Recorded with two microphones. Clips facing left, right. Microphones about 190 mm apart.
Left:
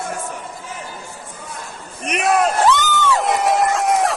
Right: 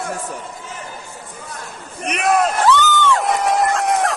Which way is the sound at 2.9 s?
5° left (ahead or behind).